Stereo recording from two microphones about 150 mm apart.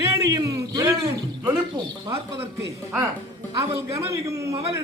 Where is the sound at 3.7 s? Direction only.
20° right (ahead or behind).